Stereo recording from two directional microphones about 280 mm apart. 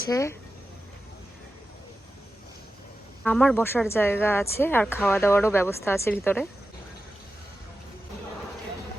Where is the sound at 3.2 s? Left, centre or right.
Centre.